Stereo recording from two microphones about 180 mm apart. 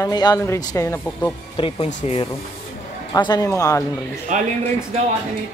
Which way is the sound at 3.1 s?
20° left (ahead or behind).